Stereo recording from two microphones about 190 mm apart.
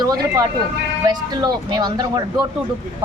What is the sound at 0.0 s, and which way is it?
A woman's voice, 20° right (ahead or behind).